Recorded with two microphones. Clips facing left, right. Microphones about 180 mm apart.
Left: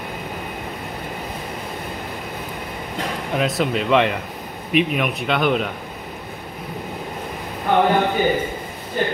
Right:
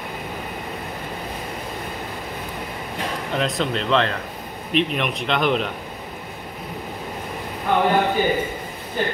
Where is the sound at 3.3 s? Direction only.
5° left (ahead or behind).